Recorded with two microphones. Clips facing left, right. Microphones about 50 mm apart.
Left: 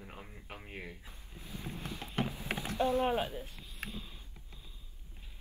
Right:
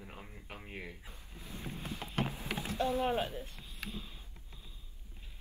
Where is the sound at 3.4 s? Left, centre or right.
Centre.